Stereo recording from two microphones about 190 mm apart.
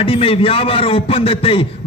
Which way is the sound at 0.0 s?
30° left (ahead or behind).